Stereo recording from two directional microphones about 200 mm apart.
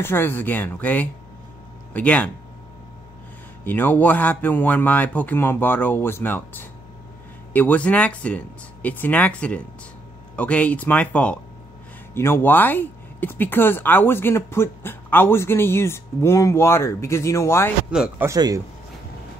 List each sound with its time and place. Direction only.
0.0 s speech: 10° left (ahead or behind)
3.6 s speech: 10° left (ahead or behind)
17.9 s speech: 5° right (ahead or behind)
18.3 s speech: 15° right (ahead or behind)